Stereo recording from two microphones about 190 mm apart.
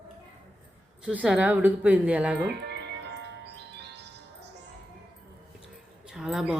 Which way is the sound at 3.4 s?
65° right (ahead or behind).